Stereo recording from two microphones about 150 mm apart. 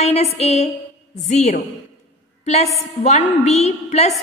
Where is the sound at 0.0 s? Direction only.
45° left (ahead or behind).